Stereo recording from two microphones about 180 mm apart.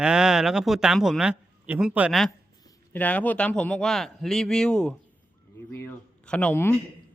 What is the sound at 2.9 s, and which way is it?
Speech, 10° left (ahead or behind).